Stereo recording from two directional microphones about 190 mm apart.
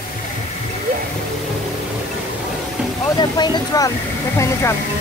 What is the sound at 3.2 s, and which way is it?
Speech, 20° left (ahead or behind).